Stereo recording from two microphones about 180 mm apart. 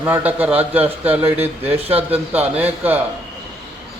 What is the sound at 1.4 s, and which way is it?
Speech, 35° right (ahead or behind).